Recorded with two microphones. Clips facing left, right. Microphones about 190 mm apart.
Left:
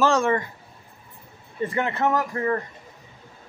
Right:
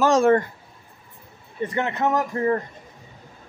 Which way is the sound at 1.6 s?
20° right (ahead or behind).